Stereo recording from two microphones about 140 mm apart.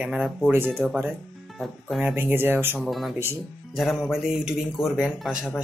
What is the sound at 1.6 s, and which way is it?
Speech, 5° right (ahead or behind).